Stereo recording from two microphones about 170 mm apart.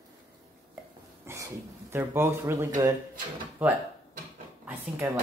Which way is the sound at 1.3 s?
15° right (ahead or behind).